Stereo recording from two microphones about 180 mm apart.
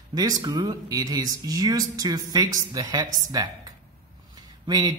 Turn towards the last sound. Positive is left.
turn(degrees=-20)  # may be behind; listen again after turning